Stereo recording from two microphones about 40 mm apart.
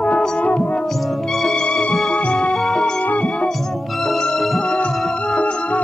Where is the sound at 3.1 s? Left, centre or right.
Left.